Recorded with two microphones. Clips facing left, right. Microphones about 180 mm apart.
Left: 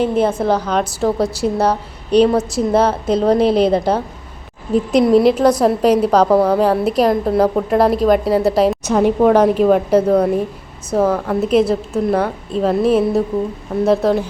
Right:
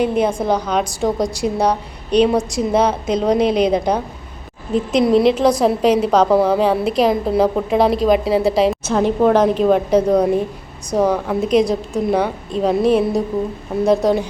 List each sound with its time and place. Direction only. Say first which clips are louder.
0.4 s a woman's voice: left 1 dB; 5° left (ahead or behind)
3.4 s a woman's voice: left 2 dB; 30° left (ahead or behind)
3.7 s a woman's voice: left 1 dB; 15° right (ahead or behind)
4.7 s a woman's voice: left 2 dB; centre (ahead or behind)